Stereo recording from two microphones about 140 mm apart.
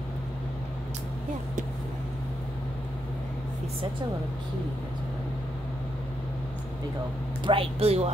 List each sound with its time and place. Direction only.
7.4 s speech: 45° right (ahead or behind)